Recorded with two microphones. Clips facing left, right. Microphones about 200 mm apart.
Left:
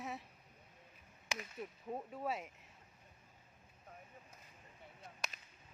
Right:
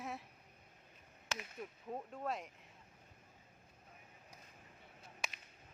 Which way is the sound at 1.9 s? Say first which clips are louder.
Left 1 dB; 5° left (ahead or behind).